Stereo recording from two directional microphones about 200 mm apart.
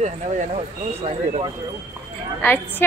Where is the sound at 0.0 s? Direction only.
35° right (ahead or behind).